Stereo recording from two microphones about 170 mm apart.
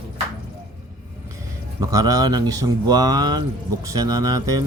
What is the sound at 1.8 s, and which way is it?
Speech, 20° right (ahead or behind).